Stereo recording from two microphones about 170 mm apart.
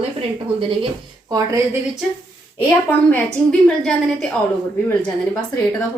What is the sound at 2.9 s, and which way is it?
Speech, 10° left (ahead or behind).